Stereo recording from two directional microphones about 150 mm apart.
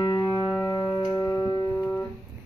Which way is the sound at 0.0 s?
25° left (ahead or behind).